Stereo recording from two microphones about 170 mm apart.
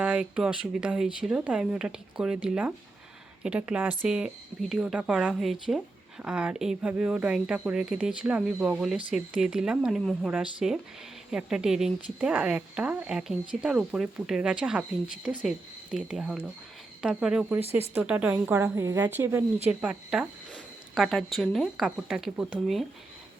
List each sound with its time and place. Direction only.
0.0 s speech: 5° right (ahead or behind)
17.7 s speech: 35° left (ahead or behind)
17.9 s a woman's voice: 10° right (ahead or behind)